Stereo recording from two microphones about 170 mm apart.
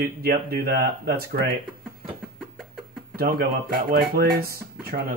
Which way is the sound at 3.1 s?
60° right (ahead or behind).